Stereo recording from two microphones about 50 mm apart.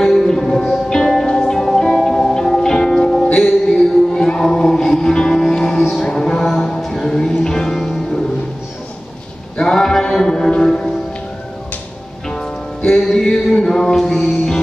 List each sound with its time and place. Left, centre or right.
0.0 s music: centre
3.3 s music: centre
4.1 s music: centre
6.5 s a sound: centre
7.0 s music: centre
9.6 s music: centre
12.3 s music: centre
13.2 s music: centre